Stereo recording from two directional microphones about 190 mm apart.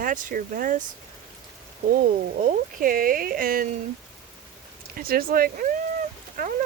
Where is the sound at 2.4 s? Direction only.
45° right (ahead or behind).